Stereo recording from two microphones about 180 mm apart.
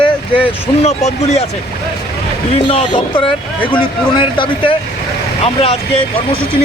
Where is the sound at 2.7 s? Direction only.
30° left (ahead or behind).